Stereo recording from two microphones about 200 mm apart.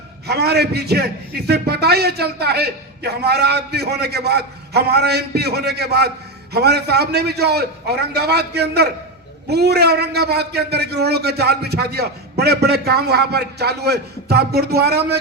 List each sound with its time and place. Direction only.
0.3 s a man's voice: 55° right (ahead or behind)